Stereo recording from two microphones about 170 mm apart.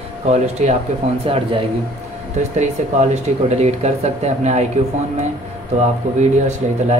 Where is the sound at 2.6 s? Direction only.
40° right (ahead or behind).